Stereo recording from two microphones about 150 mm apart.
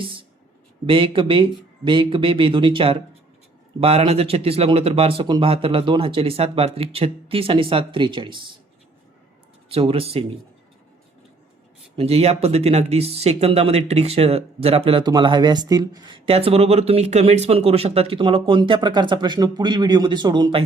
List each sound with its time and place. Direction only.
0.0 s a sound: 35° right (ahead or behind)
0.9 s speech: 35° right (ahead or behind)
9.6 s speech: 40° right (ahead or behind)
11.9 s speech: 45° right (ahead or behind)